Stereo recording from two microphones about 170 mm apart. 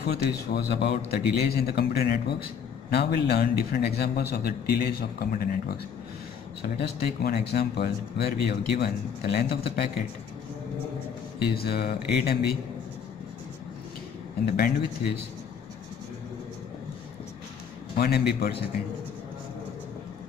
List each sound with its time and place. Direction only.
0.0 s a man's voice: 70° left (ahead or behind)
6.8 s speech: 70° left (ahead or behind)
11.3 s speech: 70° left (ahead or behind)
14.4 s a man's voice: 65° left (ahead or behind)
17.9 s speech: 70° left (ahead or behind)